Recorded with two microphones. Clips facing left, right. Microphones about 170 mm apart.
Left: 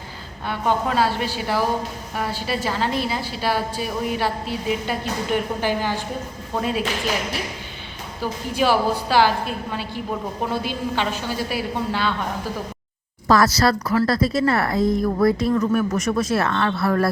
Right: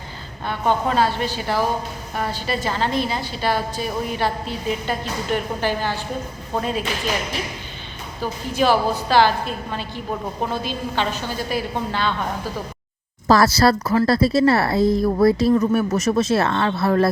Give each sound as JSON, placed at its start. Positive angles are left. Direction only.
{"t": 0.4, "sound": "a woman's voice", "side_deg": 5}
{"t": 8.2, "sound": "a woman's voice", "side_deg": 10}
{"t": 13.2, "sound": "speech", "side_deg": -30}